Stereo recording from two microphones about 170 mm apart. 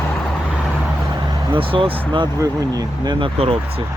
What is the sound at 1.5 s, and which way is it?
Speech, 30° right (ahead or behind).